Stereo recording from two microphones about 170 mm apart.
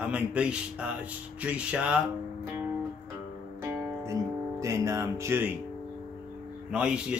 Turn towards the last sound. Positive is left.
turn(degrees=-5)  # may be behind; listen again after turning